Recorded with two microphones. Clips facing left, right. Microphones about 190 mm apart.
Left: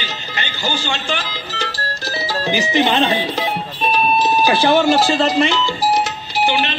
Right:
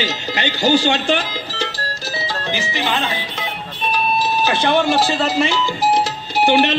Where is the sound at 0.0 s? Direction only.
75° right (ahead or behind).